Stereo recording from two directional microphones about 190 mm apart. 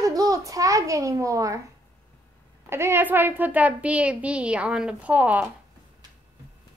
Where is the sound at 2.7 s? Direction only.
15° right (ahead or behind).